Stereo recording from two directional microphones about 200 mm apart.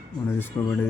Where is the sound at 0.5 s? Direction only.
20° left (ahead or behind).